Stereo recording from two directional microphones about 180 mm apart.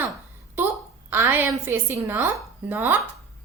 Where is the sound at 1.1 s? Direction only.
10° right (ahead or behind).